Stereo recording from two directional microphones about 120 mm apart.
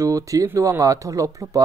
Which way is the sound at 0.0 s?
25° right (ahead or behind).